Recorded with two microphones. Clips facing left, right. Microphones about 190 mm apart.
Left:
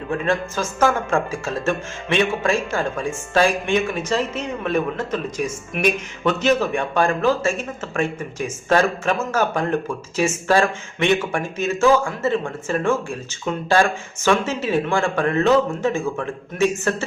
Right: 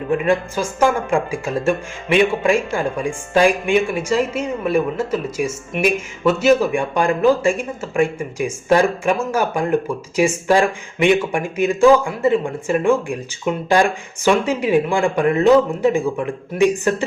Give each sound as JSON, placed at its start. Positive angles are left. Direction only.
{"t": 0.1, "sound": "speech", "side_deg": -10}